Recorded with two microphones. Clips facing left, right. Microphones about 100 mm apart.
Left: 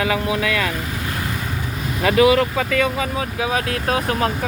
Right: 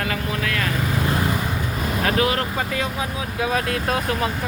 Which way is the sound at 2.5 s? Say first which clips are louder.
Left 5 dB; 90° left.